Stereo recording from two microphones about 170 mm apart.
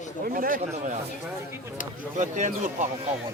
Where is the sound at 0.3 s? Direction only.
55° right (ahead or behind).